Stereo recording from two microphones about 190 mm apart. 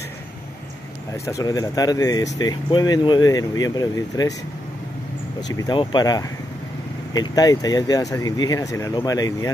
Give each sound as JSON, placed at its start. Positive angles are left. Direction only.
{"t": 1.1, "sound": "speech", "side_deg": 15}
{"t": 5.5, "sound": "speech", "side_deg": 20}